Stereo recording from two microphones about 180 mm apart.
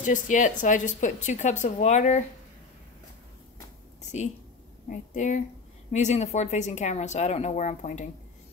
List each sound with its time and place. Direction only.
0.0 s a woman's voice: 45° left (ahead or behind)
4.0 s a sound: 40° left (ahead or behind)
4.8 s a woman's voice: 45° left (ahead or behind)